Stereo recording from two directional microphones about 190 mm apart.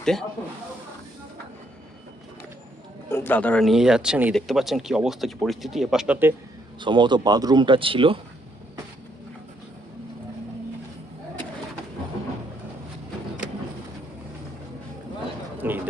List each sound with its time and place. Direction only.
0.0 s speech: centre (ahead or behind)
3.1 s speech: 10° left (ahead or behind); by 6.3 s 10° right (ahead or behind)
6.7 s speech: 25° right (ahead or behind)
15.5 s a sound: 10° right (ahead or behind)